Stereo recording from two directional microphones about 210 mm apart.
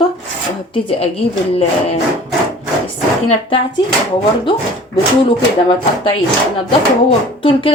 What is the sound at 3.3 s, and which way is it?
Speech, 25° left (ahead or behind).